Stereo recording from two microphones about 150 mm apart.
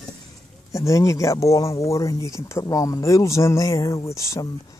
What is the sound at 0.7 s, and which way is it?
Speech, 20° left (ahead or behind).